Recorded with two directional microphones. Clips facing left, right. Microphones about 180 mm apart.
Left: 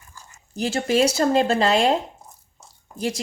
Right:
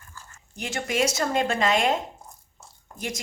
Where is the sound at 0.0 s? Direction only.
15° left (ahead or behind).